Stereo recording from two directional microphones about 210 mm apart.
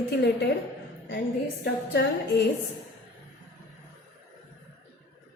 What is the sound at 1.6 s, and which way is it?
Speech, 55° left (ahead or behind).